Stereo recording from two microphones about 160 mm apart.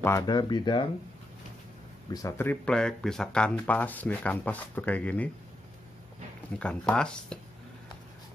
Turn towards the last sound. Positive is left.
turn(degrees=5)  # may be behind; listen again after turning